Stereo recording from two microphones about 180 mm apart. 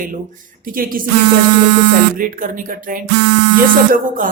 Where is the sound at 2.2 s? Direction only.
50° right (ahead or behind).